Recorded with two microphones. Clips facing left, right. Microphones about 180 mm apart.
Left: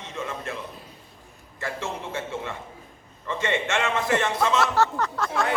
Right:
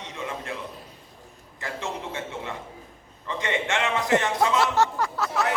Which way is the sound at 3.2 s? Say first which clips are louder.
Left 1 dB; 15° right (ahead or behind).